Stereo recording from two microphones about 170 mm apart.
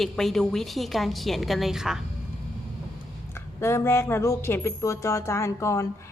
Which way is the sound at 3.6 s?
15° left (ahead or behind).